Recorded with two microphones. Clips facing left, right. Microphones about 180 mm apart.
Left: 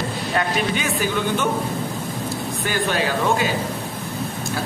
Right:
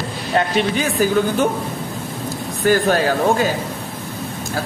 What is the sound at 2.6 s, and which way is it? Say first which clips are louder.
Speech: right 8 dB; 45° right (ahead or behind).